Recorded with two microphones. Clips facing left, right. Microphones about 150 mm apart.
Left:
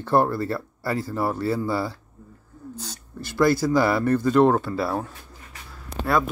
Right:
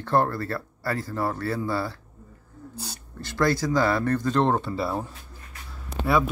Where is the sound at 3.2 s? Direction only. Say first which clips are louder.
Left 4 dB; 10° left (ahead or behind).